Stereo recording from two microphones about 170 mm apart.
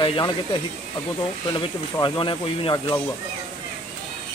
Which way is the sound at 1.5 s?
25° left (ahead or behind).